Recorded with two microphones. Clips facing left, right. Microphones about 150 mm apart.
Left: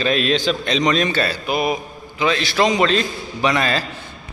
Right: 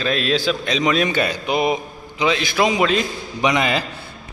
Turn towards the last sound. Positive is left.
turn(degrees=-15)  # may be behind; listen again after turning